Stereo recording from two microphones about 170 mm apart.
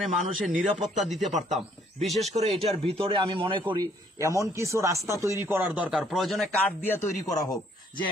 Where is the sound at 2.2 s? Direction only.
40° right (ahead or behind); by 6.4 s centre (ahead or behind).